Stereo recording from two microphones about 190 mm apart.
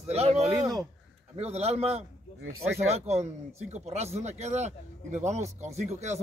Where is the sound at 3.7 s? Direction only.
35° right (ahead or behind).